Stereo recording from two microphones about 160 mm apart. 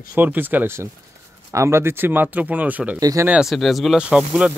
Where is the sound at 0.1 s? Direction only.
10° right (ahead or behind).